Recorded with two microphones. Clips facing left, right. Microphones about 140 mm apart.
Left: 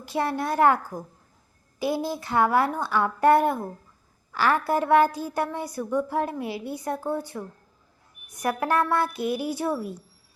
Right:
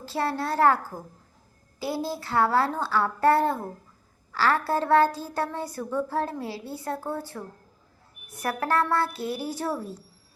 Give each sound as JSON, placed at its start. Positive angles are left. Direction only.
{"t": 0.0, "sound": "a woman's voice", "side_deg": 15}
{"t": 1.8, "sound": "a woman's voice", "side_deg": 20}